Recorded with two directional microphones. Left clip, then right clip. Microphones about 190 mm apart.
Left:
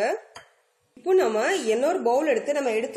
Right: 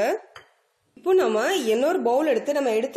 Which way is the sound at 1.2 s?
40° right (ahead or behind).